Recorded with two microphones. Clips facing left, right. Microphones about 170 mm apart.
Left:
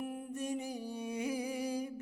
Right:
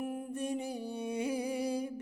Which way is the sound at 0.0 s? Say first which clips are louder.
Right 3 dB; 45° right (ahead or behind).